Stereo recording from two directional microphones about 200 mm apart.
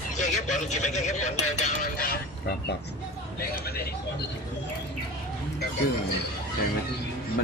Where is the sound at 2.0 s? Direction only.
50° left (ahead or behind).